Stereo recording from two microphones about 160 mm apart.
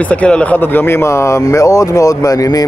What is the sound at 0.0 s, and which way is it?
Speech, 10° left (ahead or behind).